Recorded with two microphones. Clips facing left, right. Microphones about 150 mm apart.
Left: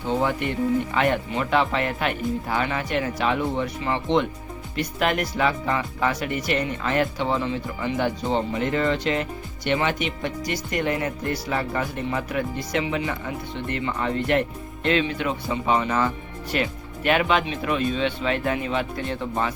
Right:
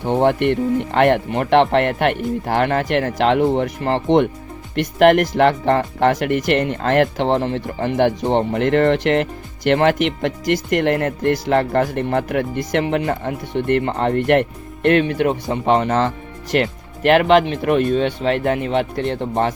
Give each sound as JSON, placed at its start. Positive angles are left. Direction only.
{"t": 0.0, "sound": "speech", "side_deg": -65}
{"t": 9.6, "sound": "speech", "side_deg": -75}
{"t": 10.8, "sound": "speech", "side_deg": -70}